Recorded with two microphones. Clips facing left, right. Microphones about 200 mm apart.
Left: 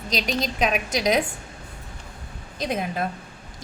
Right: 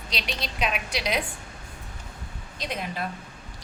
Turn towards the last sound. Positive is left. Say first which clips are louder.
# left 6 dB
turn(degrees=45)  # may be behind; listen again after turning